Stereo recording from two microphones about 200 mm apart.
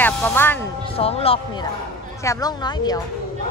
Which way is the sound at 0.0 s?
10° left (ahead or behind).